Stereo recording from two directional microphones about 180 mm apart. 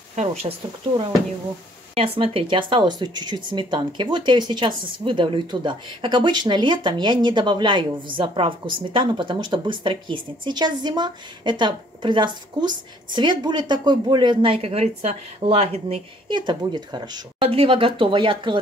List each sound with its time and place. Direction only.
0.1 s speech: 40° right (ahead or behind)
2.0 s speech: 30° right (ahead or behind)